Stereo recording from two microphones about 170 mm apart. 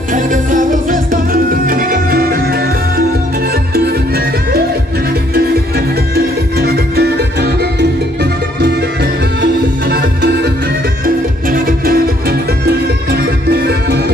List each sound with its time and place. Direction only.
0.1 s music: 50° right (ahead or behind)
5.3 s music: 65° right (ahead or behind)
11.4 s music: 55° right (ahead or behind); by 14.1 s 70° right (ahead or behind)